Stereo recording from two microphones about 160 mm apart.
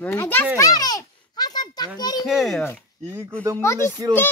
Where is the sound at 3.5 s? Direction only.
15° left (ahead or behind).